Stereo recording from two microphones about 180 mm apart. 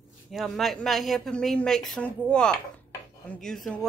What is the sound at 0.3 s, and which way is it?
Speech, centre (ahead or behind).